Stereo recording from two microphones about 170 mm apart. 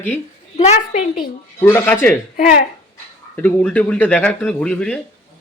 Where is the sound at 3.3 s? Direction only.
10° left (ahead or behind).